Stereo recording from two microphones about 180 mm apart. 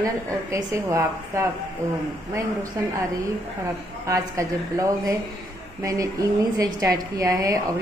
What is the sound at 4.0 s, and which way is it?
A woman's voice, 15° right (ahead or behind).